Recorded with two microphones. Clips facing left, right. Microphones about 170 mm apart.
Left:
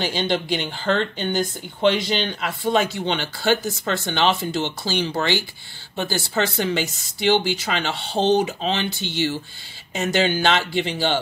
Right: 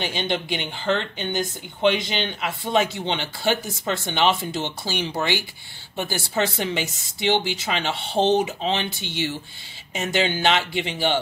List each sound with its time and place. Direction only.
0.0 s speech: 20° right (ahead or behind)